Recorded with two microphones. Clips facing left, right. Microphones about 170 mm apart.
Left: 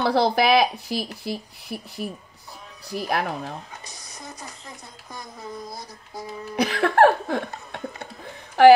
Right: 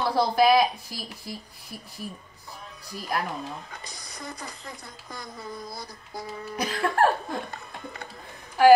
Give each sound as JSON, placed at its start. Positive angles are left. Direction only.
{"t": 0.0, "sound": "speech", "side_deg": 75}
{"t": 6.5, "sound": "speech", "side_deg": 75}